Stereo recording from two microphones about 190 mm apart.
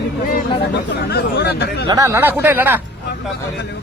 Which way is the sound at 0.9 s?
60° left (ahead or behind).